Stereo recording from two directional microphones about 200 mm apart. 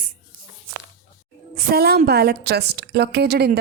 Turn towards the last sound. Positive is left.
turn(degrees=-50)  # may be behind; listen again after turning